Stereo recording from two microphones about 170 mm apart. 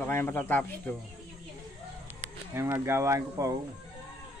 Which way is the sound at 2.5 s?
15° right (ahead or behind).